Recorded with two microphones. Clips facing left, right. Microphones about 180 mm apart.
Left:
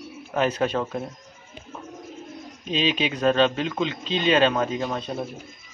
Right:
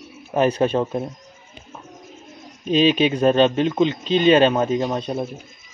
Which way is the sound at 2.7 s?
35° right (ahead or behind).